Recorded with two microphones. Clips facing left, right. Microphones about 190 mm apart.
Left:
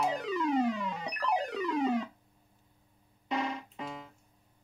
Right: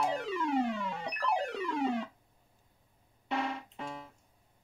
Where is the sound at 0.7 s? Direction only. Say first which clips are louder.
Left 1 dB; 15° left (ahead or behind).